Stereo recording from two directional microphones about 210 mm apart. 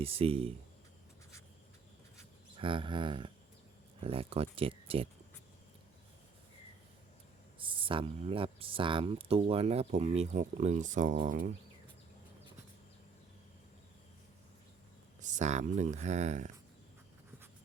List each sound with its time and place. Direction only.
0.0 s speech: 25° right (ahead or behind)
2.6 s speech: 25° right (ahead or behind)
7.6 s speech: 25° right (ahead or behind)
15.2 s speech: 35° right (ahead or behind)